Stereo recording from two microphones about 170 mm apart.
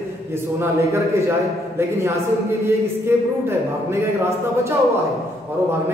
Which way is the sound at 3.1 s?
15° right (ahead or behind).